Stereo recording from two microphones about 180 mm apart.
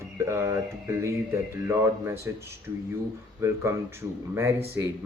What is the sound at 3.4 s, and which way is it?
Speech, 15° right (ahead or behind).